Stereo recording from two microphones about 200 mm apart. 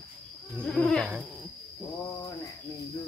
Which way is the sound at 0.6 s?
10° left (ahead or behind).